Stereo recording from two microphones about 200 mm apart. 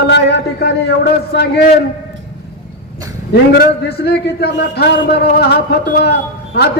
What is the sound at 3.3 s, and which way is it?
A man's voice, 55° left (ahead or behind).